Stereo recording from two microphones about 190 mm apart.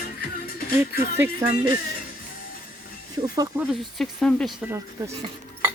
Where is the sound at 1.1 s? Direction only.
10° right (ahead or behind).